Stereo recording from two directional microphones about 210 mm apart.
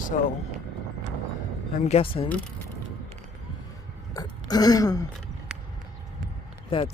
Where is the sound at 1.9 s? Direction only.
25° left (ahead or behind).